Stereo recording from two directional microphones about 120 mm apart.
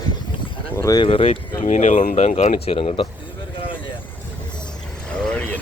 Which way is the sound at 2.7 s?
45° left (ahead or behind).